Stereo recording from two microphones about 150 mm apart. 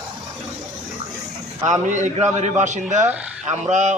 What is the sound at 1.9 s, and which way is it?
Speech, 50° right (ahead or behind).